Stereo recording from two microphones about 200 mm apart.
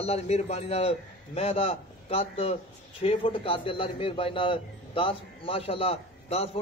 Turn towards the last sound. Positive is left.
turn(degrees=30)  # may be behind; listen again after turning